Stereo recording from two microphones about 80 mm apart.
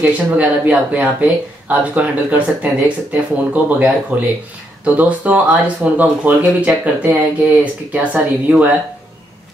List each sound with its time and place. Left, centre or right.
0.0 s speech: centre